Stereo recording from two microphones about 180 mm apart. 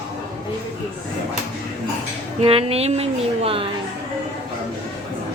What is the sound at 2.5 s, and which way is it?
Speech, 30° right (ahead or behind).